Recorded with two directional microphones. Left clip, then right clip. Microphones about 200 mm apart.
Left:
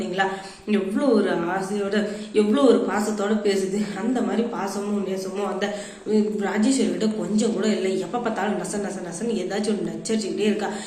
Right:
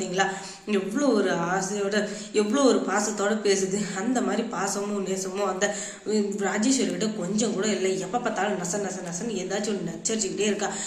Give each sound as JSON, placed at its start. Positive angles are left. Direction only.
{"t": 0.7, "sound": "speech", "side_deg": -15}
{"t": 6.1, "sound": "speech", "side_deg": -15}